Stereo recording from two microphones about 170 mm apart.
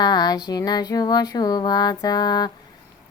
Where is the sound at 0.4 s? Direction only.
25° left (ahead or behind).